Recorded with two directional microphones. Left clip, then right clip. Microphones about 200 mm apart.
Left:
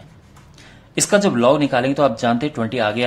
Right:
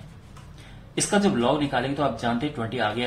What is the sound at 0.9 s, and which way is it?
Speech, 50° left (ahead or behind).